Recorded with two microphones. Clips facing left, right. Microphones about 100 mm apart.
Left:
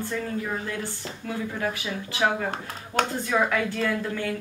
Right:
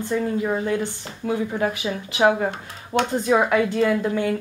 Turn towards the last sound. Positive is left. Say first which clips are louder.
# right 7 dB
turn(degrees=-20)  # may be behind; listen again after turning